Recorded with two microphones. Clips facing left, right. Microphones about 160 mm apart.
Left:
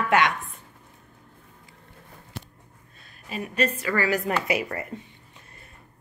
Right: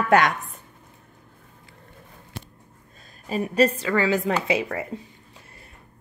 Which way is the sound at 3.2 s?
35° right (ahead or behind).